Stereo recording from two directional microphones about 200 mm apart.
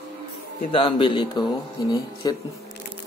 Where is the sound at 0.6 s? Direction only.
25° left (ahead or behind).